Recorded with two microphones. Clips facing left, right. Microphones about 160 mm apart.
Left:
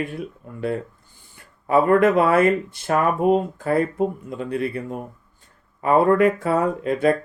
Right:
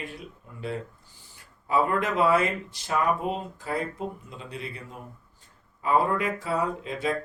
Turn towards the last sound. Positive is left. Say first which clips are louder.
# left 10 dB
turn(degrees=55)  # may be behind; listen again after turning